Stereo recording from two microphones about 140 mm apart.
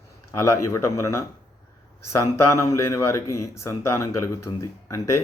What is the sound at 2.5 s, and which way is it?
Speech, 20° left (ahead or behind).